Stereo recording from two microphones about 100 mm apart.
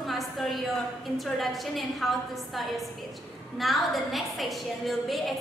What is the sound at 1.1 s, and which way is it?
A woman's voice, centre (ahead or behind).